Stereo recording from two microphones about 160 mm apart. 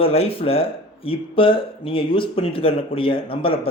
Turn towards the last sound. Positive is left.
turn(degrees=35)  # may be behind; listen again after turning